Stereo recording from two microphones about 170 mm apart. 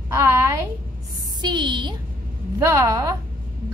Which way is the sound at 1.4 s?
25° right (ahead or behind).